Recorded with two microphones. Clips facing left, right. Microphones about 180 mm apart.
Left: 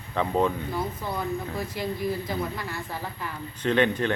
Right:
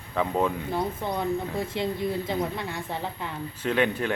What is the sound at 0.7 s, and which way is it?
Speech, 25° right (ahead or behind).